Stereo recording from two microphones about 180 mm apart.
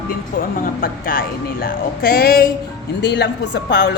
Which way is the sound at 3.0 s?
70° left (ahead or behind).